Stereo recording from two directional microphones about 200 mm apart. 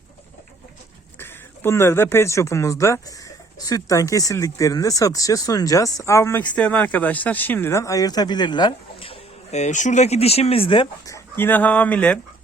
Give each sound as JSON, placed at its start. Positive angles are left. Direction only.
{"t": 1.2, "sound": "speech", "side_deg": 10}